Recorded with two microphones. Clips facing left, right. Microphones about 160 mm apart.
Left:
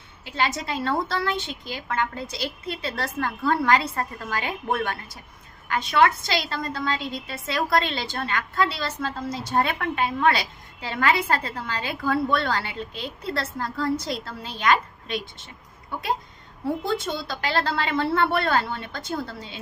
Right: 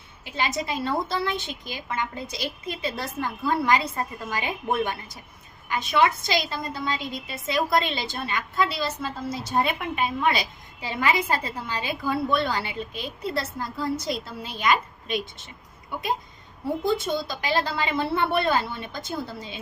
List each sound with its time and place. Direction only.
0.3 s a woman's voice: 10° right (ahead or behind)
17.2 s a woman's voice: 15° right (ahead or behind)